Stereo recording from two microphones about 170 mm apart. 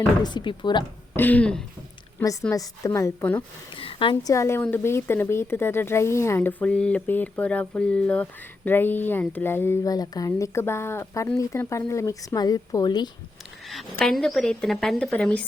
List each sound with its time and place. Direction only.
0.2 s speech: 25° left (ahead or behind)
1.1 s speech: 10° left (ahead or behind)
2.1 s a woman's voice: 20° left (ahead or behind)
3.8 s speech: 30° left (ahead or behind)
13.9 s a woman's voice: 5° left (ahead or behind)